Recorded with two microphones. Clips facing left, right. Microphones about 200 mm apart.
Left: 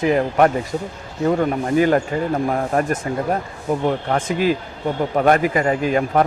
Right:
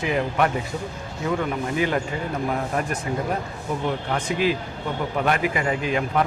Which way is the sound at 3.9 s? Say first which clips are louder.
Left 5 dB; 45° left (ahead or behind).